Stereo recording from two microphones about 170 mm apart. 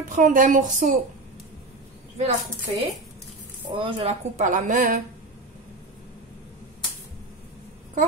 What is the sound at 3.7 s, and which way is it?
Speech, 35° right (ahead or behind).